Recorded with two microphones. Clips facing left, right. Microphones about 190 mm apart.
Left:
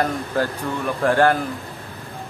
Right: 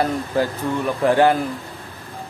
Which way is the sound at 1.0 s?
10° right (ahead or behind).